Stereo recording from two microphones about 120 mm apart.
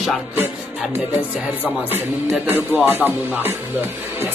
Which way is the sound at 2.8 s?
15° right (ahead or behind).